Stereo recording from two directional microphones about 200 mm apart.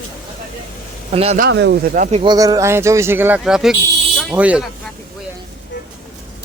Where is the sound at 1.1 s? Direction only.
30° right (ahead or behind).